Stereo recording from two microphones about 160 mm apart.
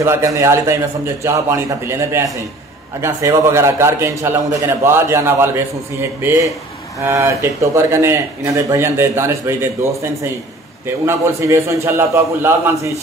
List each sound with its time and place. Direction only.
0.0 s a man's voice: 15° right (ahead or behind)
11.1 s a man's voice: 15° right (ahead or behind)